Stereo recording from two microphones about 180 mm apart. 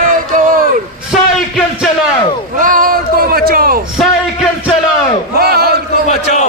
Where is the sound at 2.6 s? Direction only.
50° right (ahead or behind).